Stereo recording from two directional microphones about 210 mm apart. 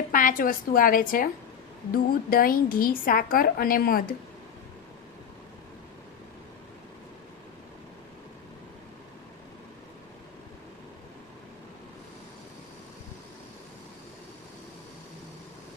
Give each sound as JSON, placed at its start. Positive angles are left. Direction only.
{"t": 0.1, "sound": "a woman's voice", "side_deg": 40}